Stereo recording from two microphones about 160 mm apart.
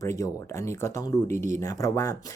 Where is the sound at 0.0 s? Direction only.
20° left (ahead or behind).